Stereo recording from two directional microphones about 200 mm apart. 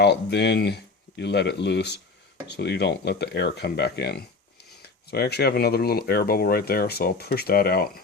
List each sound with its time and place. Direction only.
0.0 s speech: 55° left (ahead or behind)